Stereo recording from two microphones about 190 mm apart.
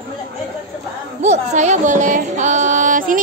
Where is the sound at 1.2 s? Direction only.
40° right (ahead or behind).